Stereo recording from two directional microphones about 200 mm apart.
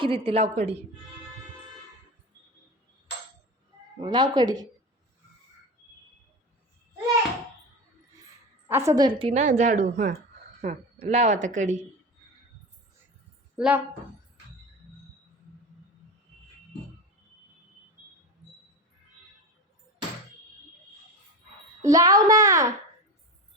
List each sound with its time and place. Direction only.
0.0 s speech: 25° right (ahead or behind)
4.0 s speech: 20° right (ahead or behind)
8.6 s speech: 15° right (ahead or behind); by 11.8 s 40° right (ahead or behind)
13.6 s a woman's voice: 5° right (ahead or behind)
21.8 s a child's voice: 20° right (ahead or behind)